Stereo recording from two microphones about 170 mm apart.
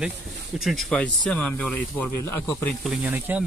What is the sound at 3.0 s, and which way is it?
Speech, 10° right (ahead or behind).